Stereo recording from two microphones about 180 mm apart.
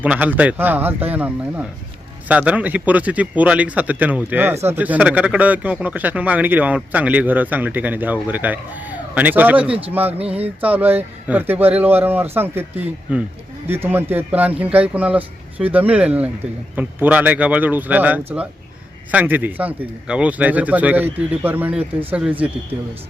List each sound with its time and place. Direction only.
0.0 s speech: 10° right (ahead or behind)
10.2 s a sound: 35° right (ahead or behind)
10.6 s speech: 10° right (ahead or behind)